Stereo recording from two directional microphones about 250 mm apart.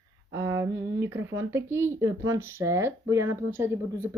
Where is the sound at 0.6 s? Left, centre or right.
Centre.